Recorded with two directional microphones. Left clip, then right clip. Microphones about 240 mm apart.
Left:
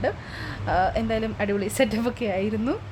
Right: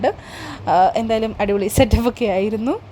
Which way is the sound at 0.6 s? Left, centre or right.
Right.